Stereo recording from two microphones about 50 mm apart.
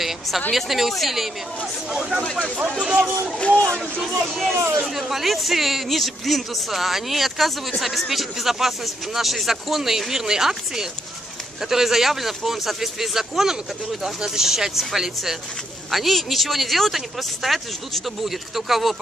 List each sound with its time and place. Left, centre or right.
0.5 s speech: centre
1.9 s speech: centre
2.2 s speech: left
2.8 s speech: centre
3.3 s speech: left
4.0 s speech: centre